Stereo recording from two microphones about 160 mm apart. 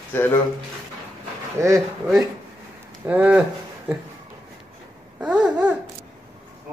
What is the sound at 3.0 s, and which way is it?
Speech, 10° right (ahead or behind).